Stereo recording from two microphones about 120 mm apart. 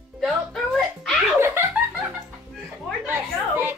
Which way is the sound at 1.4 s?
20° right (ahead or behind).